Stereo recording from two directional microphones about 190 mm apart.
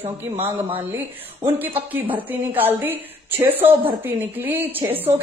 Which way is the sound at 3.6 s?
30° right (ahead or behind).